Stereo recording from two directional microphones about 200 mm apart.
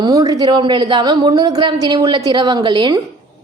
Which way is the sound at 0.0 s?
20° right (ahead or behind).